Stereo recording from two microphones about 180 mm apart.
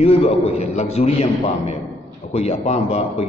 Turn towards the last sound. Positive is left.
turn(degrees=35)  # may be behind; listen again after turning